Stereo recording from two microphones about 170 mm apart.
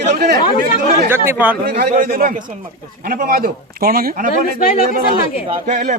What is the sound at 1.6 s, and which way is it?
Speech, 70° right (ahead or behind).